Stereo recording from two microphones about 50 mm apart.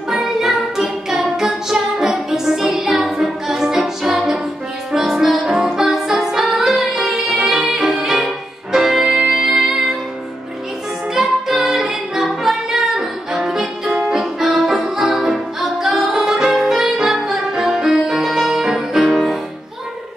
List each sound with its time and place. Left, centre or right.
0.1 s music: centre
11.1 s music: centre